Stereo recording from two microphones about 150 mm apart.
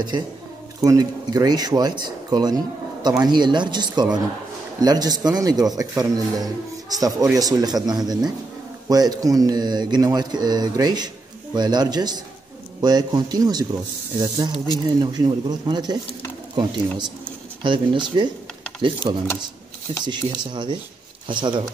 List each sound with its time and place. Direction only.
0.7 s speech: 25° right (ahead or behind)
17.6 s speech: 30° right (ahead or behind)